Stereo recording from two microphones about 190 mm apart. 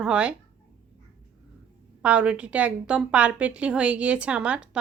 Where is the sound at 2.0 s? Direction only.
5° right (ahead or behind).